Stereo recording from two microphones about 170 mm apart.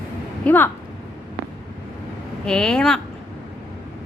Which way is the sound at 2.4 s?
5° left (ahead or behind).